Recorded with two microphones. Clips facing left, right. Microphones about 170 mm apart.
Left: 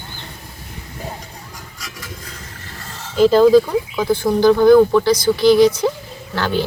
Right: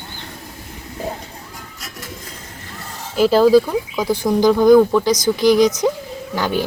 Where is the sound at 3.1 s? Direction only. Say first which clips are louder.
Left 1 dB; 10° right (ahead or behind).